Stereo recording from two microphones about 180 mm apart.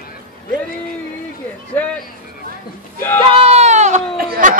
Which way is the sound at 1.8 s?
10° left (ahead or behind).